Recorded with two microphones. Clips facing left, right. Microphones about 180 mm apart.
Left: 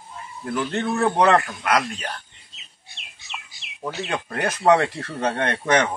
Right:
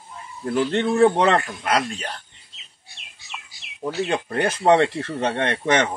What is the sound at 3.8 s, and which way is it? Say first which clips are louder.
A man's voice: right 4 dB; 30° right (ahead or behind).